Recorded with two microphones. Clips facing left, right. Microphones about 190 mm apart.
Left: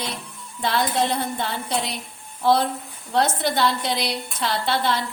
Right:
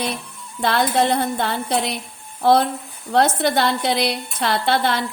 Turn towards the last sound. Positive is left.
turn(degrees=-60)  # may be behind; listen again after turning